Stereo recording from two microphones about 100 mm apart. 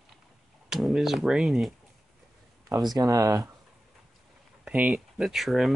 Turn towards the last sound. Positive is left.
turn(degrees=0)  # may be behind; listen again after turning